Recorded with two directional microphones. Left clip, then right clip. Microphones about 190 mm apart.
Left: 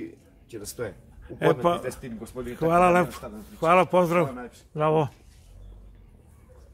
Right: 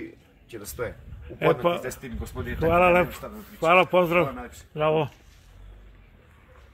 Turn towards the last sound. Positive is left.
turn(degrees=10)  # may be behind; listen again after turning